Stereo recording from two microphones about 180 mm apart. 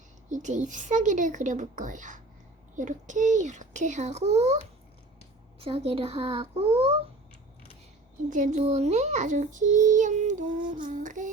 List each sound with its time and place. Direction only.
0.3 s a child's voice: 45° right (ahead or behind)
5.5 s a woman's voice: 30° right (ahead or behind)
8.3 s a child's voice: 40° right (ahead or behind)